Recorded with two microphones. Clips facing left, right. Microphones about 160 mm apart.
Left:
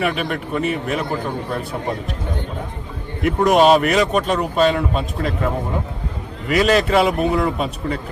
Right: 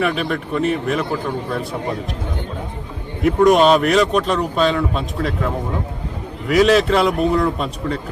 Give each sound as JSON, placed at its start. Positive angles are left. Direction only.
{"t": 0.0, "sound": "speech", "side_deg": 5}
{"t": 3.2, "sound": "speech", "side_deg": 5}
{"t": 6.5, "sound": "speech", "side_deg": 0}